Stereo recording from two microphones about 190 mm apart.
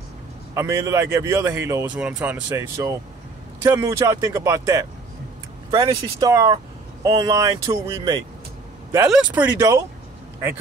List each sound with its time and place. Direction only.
0.6 s speech: 15° right (ahead or behind)